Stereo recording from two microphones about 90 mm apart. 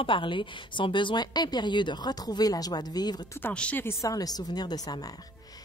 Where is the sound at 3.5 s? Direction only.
10° left (ahead or behind).